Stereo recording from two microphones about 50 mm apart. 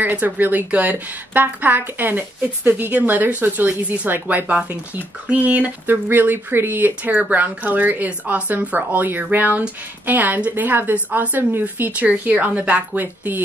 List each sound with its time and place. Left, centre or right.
0.0 s speech: right
4.5 s speech: right
5.9 s speech: right